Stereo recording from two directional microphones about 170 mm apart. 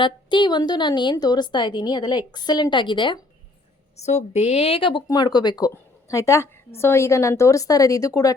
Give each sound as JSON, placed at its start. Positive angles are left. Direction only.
{"t": 0.0, "sound": "a woman's voice", "side_deg": 25}
{"t": 3.9, "sound": "a woman's voice", "side_deg": 40}